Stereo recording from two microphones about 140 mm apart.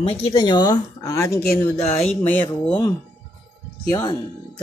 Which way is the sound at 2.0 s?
10° left (ahead or behind).